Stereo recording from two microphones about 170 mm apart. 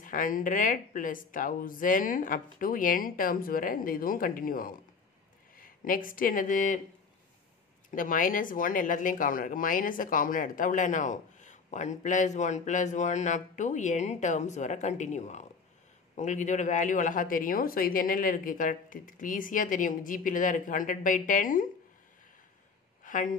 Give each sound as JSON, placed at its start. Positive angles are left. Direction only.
{"t": 0.0, "sound": "speech", "side_deg": 50}
{"t": 7.9, "sound": "speech", "side_deg": 50}
{"t": 23.0, "sound": "a sound", "side_deg": 50}